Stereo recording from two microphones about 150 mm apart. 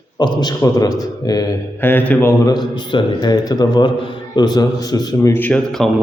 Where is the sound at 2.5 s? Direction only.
30° left (ahead or behind); by 5.9 s 10° left (ahead or behind).